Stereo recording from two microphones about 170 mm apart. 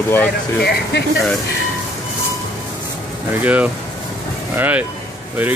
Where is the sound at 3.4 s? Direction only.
10° right (ahead or behind).